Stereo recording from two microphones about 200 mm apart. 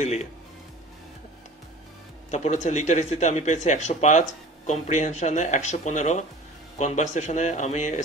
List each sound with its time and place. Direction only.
0.0 s speech: 35° left (ahead or behind)
2.3 s speech: 35° left (ahead or behind)